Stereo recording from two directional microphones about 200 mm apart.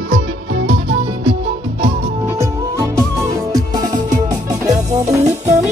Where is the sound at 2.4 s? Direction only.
15° right (ahead or behind).